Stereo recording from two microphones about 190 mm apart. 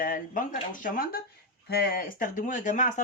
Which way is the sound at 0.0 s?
45° left (ahead or behind).